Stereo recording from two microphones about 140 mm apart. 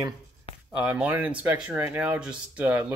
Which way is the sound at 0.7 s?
10° right (ahead or behind).